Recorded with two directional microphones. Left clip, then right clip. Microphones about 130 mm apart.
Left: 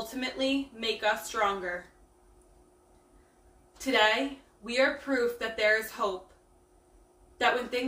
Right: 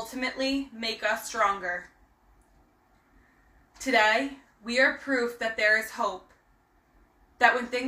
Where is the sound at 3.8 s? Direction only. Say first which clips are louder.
Right 2 dB; 25° left (ahead or behind).